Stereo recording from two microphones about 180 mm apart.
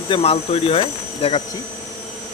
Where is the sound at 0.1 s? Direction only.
30° left (ahead or behind).